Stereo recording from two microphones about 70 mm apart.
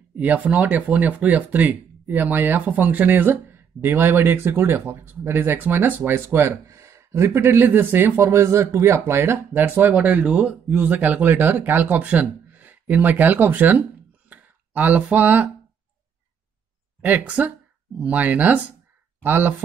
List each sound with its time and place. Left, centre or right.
0.1 s speech: right
6.5 s speech: right
17.0 s speech: right